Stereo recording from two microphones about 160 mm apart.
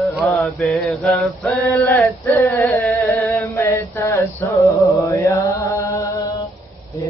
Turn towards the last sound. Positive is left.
turn(degrees=20)  # may be behind; listen again after turning